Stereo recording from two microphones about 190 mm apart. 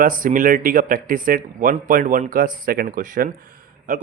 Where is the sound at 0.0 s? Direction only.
45° right (ahead or behind).